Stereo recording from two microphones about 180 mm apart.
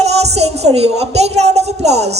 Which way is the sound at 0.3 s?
35° right (ahead or behind).